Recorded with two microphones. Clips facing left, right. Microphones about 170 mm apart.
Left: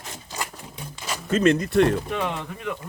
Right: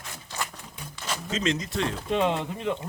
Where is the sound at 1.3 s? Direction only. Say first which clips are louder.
Left 10 dB; 55° left (ahead or behind).